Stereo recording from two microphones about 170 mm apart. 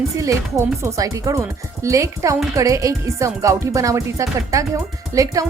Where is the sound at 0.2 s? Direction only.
20° right (ahead or behind).